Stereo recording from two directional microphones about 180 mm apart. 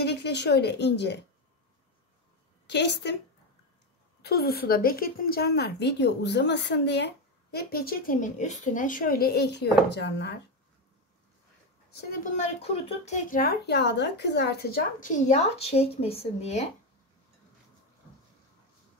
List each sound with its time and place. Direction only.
0.0 s a woman's voice: 70° left (ahead or behind)
2.6 s a woman's voice: 70° left (ahead or behind)
4.2 s a woman's voice: 60° left (ahead or behind)
12.4 s speech: 35° left (ahead or behind)